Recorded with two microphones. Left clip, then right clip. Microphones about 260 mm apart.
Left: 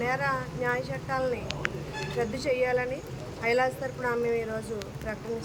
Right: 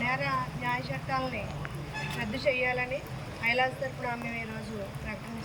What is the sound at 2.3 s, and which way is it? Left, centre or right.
Speech, centre.